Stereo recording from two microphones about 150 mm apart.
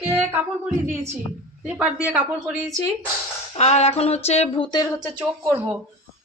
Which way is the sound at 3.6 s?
45° left (ahead or behind).